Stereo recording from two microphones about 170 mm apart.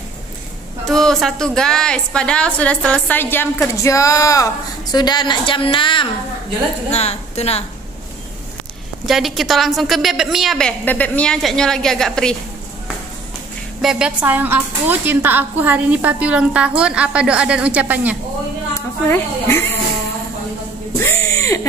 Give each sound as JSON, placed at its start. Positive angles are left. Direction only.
{"t": 0.8, "sound": "a woman's voice", "side_deg": 0}
{"t": 9.0, "sound": "a woman's voice", "side_deg": 0}
{"t": 13.7, "sound": "speech", "side_deg": -5}
{"t": 19.0, "sound": "speech", "side_deg": 15}
{"t": 21.0, "sound": "a sound", "side_deg": 15}